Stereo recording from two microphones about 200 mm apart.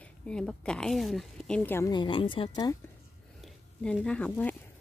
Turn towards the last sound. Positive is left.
turn(degrees=10)  # may be behind; listen again after turning